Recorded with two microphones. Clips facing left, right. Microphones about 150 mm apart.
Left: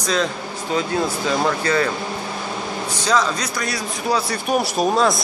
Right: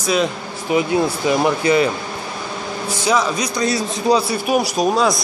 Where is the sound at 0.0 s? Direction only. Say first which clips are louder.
Right 3 dB; 10° right (ahead or behind).